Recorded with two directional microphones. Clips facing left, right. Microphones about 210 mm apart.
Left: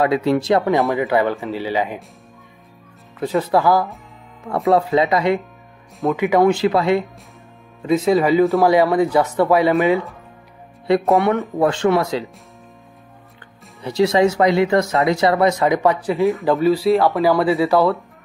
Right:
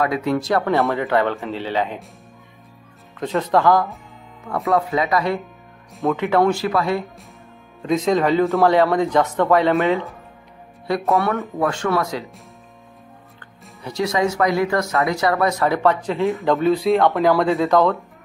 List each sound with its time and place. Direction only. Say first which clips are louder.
0.0 s speech: left 3 dB; 30° left (ahead or behind); by 2.0 s 10° left (ahead or behind)
3.2 s speech: left 1 dB; 5° left (ahead or behind)
4.5 s speech: left 4 dB; 30° left (ahead or behind)
6.1 s speech: left 3 dB; 10° left (ahead or behind)
7.8 s speech: left 2 dB; 5° left (ahead or behind)
11.3 s speech: left 4 dB; 30° left (ahead or behind)
13.8 s speech: left 5 dB; 30° left (ahead or behind)
16.2 s speech: left 2 dB; centre (ahead or behind)